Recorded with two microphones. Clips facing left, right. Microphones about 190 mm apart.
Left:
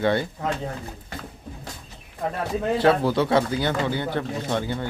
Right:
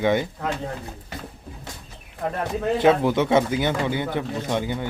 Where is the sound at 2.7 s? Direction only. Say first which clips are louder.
Right 2 dB; 20° right (ahead or behind).